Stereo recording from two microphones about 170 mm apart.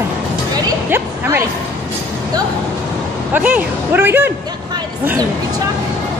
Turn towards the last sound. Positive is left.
turn(degrees=-15)  # may be behind; listen again after turning